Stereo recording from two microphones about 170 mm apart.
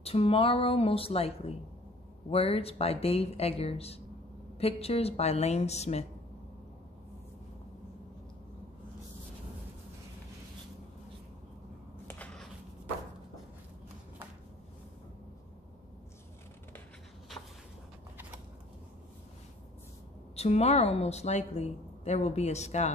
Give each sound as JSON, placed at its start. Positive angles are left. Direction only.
{"t": 0.0, "sound": "a woman's voice", "side_deg": 35}
{"t": 12.1, "sound": "a sound", "side_deg": 10}
{"t": 20.3, "sound": "a woman's voice", "side_deg": 40}